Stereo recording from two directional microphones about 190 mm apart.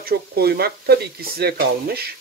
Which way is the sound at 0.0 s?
55° right (ahead or behind).